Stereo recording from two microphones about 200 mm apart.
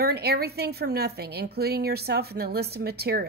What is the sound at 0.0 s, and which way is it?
A woman's voice, 50° right (ahead or behind).